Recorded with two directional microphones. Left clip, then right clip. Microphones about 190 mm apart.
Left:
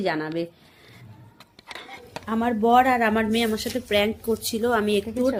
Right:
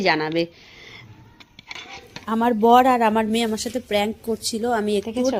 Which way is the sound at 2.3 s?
50° right (ahead or behind).